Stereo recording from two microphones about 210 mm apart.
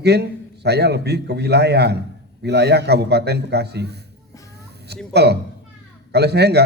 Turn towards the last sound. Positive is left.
turn(degrees=-50)  # may be behind; listen again after turning